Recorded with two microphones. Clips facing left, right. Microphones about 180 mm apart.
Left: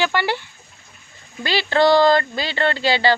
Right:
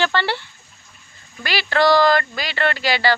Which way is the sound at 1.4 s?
20° left (ahead or behind).